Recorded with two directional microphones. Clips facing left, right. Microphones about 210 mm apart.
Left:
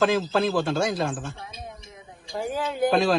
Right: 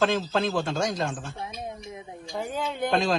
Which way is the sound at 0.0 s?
Centre (ahead or behind).